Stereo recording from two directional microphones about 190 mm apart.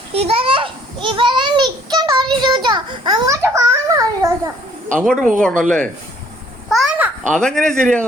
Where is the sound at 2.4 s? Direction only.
25° right (ahead or behind).